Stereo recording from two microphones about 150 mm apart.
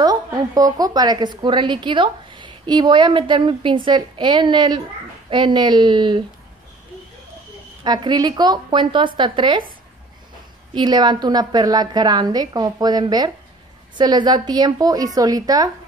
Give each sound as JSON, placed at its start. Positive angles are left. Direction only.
{"t": 0.0, "sound": "a woman's voice", "side_deg": -25}
{"t": 7.8, "sound": "a woman's voice", "side_deg": -30}
{"t": 10.7, "sound": "a woman's voice", "side_deg": -30}